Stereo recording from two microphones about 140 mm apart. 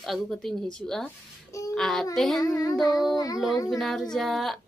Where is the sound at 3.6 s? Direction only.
Centre (ahead or behind).